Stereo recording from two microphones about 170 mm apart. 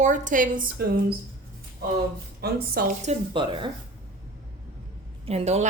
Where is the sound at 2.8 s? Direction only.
45° right (ahead or behind).